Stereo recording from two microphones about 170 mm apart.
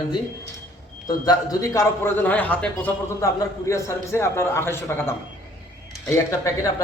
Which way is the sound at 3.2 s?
20° left (ahead or behind).